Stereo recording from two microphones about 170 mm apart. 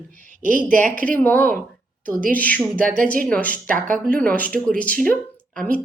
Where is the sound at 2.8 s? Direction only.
55° right (ahead or behind).